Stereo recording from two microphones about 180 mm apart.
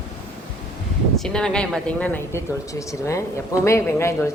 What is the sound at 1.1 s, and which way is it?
Speech, 5° left (ahead or behind).